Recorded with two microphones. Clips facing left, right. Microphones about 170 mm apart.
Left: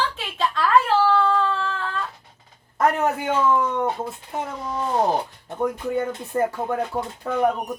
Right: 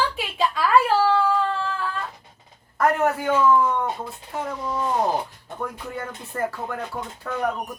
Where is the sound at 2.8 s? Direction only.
20° left (ahead or behind).